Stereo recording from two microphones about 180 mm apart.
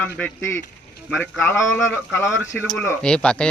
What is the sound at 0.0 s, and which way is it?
A man's voice, 10° left (ahead or behind).